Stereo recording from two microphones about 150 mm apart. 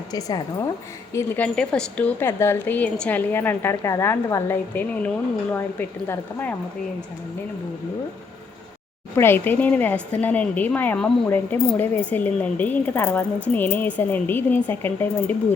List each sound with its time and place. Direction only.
0.1 s a woman's voice: 25° left (ahead or behind)
1.1 s a woman's voice: 10° left (ahead or behind)
9.1 s a woman's voice: 15° left (ahead or behind)